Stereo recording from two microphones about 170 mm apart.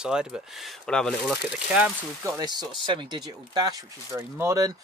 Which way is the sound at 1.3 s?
5° right (ahead or behind).